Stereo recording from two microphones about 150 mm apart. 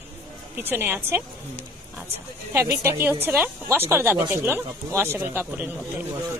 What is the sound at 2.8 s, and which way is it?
A man's voice, 15° right (ahead or behind).